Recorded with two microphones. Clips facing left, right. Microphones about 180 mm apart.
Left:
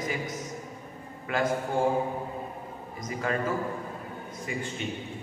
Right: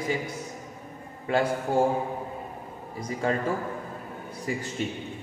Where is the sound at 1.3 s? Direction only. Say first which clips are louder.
Right 4 dB; 30° right (ahead or behind).